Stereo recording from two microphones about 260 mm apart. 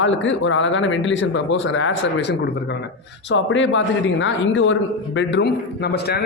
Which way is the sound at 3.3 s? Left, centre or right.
Left.